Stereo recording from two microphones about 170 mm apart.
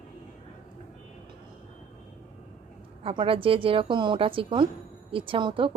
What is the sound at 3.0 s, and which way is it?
A woman's voice, 30° right (ahead or behind).